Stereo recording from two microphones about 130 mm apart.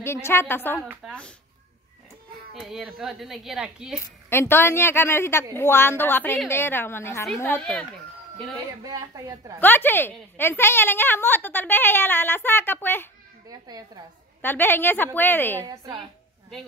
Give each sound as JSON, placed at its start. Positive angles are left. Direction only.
{"t": 0.0, "sound": "a woman's voice", "side_deg": 20}
{"t": 2.6, "sound": "a woman's voice", "side_deg": 0}
{"t": 4.3, "sound": "a woman's voice", "side_deg": 15}
{"t": 8.8, "sound": "a woman's voice", "side_deg": -25}
{"t": 9.6, "sound": "a woman's voice", "side_deg": 15}
{"t": 13.5, "sound": "a woman's voice", "side_deg": -30}
{"t": 14.4, "sound": "a woman's voice", "side_deg": 15}
{"t": 15.6, "sound": "a woman's voice", "side_deg": -30}